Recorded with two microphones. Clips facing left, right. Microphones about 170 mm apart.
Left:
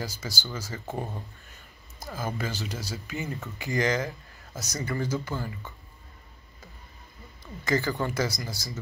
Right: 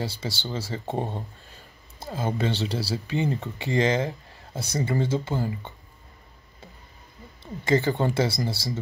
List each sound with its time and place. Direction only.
0.0 s speech: 30° right (ahead or behind)
7.4 s speech: 25° right (ahead or behind)